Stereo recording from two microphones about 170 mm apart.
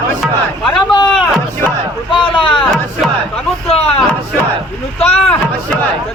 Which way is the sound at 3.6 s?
35° left (ahead or behind).